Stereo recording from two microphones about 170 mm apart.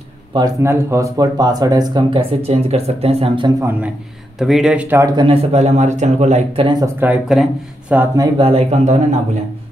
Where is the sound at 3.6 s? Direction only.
10° right (ahead or behind); by 6.6 s 40° right (ahead or behind).